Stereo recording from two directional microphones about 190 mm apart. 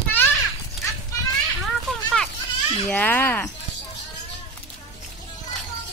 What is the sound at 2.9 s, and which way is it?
Speech, 10° left (ahead or behind).